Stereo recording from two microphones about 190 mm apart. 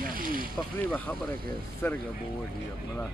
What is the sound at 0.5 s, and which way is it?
Speech, 10° left (ahead or behind).